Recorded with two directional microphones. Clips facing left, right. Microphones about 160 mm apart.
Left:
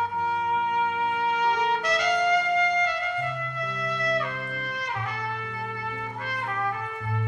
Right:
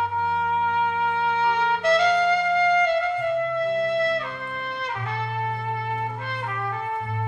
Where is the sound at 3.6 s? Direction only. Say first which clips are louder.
Right 4 dB; 30° right (ahead or behind).